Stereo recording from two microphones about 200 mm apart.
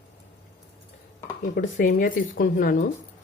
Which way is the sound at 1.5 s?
40° left (ahead or behind).